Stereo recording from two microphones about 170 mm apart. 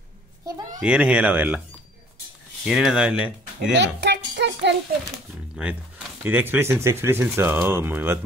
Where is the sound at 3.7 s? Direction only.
90° right.